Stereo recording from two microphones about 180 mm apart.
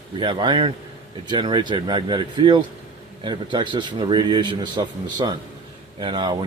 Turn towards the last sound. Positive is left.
turn(degrees=-25)  # may be behind; listen again after turning